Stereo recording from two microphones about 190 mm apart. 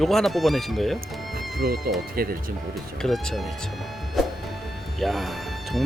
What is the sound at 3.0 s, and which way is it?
Speech, centre (ahead or behind).